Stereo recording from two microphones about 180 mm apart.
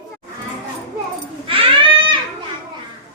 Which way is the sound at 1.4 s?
30° right (ahead or behind).